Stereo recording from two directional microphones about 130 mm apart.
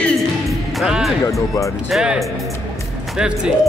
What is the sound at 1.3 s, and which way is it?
Speech, 25° left (ahead or behind).